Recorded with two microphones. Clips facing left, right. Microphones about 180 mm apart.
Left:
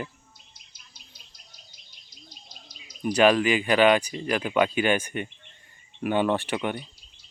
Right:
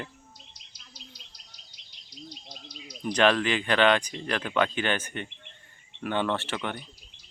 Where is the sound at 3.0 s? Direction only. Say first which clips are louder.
Left 3 dB; 10° left (ahead or behind).